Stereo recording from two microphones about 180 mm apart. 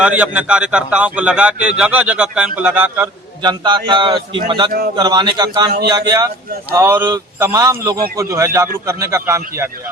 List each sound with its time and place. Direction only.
0.0 s a man's voice: 10° right (ahead or behind)
3.4 s a man's voice: 25° right (ahead or behind)